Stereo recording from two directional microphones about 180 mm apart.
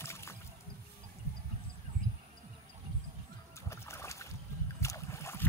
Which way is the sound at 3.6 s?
15° left (ahead or behind).